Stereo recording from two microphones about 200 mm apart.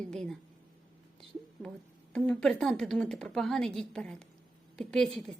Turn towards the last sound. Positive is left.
turn(degrees=0)  # may be behind; listen again after turning